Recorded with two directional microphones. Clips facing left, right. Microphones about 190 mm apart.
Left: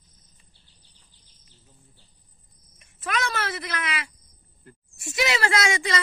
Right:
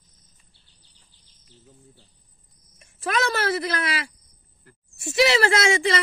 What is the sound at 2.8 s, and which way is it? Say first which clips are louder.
Speech: right 4 dB; 30° right (ahead or behind).